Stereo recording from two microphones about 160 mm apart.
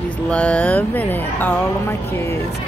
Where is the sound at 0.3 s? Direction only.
5° left (ahead or behind).